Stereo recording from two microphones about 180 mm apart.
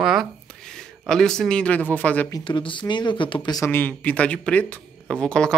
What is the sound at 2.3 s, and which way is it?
Speech, 25° left (ahead or behind).